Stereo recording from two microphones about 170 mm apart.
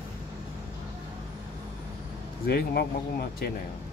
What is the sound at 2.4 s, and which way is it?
Speech, 65° left (ahead or behind).